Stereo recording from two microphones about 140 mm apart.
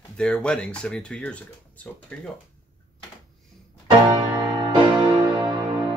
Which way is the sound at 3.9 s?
35° right (ahead or behind).